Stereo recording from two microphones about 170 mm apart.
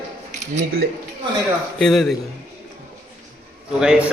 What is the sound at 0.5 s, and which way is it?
Speech, 65° right (ahead or behind).